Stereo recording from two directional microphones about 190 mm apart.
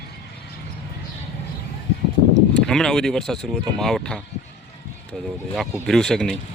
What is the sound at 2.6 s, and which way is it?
Speech, 5° left (ahead or behind).